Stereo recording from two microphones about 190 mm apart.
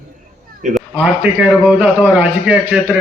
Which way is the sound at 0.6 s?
40° right (ahead or behind).